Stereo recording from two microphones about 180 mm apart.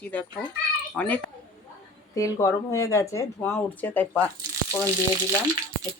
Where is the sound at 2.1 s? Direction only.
15° left (ahead or behind).